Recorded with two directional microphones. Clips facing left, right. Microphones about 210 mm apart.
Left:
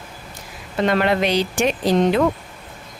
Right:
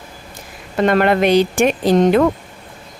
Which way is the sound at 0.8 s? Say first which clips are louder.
Right 4 dB; 50° right (ahead or behind).